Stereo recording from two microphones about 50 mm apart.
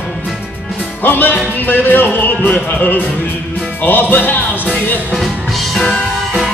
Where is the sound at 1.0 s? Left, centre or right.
Left.